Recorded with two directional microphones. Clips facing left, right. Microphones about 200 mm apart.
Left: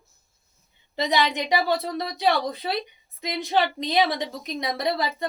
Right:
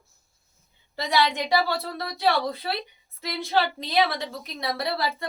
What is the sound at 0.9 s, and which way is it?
A woman's voice, 20° left (ahead or behind).